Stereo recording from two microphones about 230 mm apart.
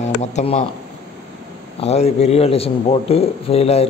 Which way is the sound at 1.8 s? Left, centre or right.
Left.